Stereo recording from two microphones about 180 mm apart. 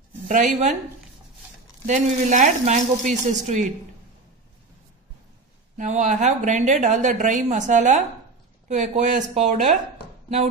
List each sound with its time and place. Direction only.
0.3 s a woman's voice: 45° right (ahead or behind)
1.9 s speech: 40° right (ahead or behind)
5.8 s a woman's voice: 45° right (ahead or behind)